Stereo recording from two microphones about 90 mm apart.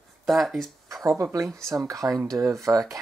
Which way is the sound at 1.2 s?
40° right (ahead or behind).